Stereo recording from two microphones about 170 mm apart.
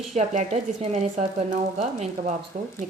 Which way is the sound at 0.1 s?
40° right (ahead or behind).